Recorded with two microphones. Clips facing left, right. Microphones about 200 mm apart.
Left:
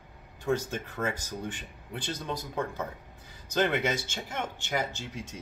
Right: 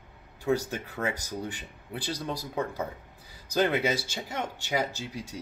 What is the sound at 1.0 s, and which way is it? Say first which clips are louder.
Speech: right 1 dB; 15° right (ahead or behind).